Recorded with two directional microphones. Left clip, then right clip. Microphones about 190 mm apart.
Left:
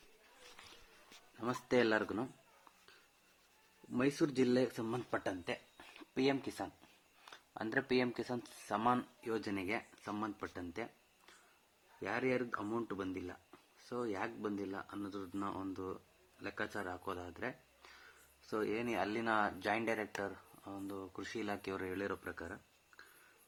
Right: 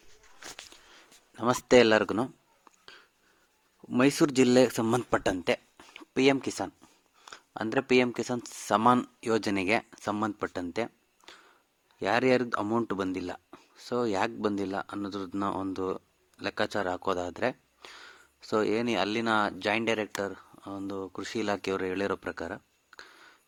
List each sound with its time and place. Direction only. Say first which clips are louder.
1.4 s speech: right 13 dB; 45° right (ahead or behind)
3.9 s speech: right 11 dB; 50° right (ahead or behind)
5.7 s a sound: right 6 dB; 25° right (ahead or behind)
6.1 s speech: right 11 dB; 40° right (ahead or behind)
9.2 s speech: right 12 dB; 50° right (ahead or behind)